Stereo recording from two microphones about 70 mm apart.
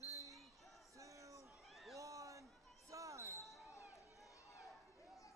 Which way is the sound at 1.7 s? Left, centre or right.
Centre.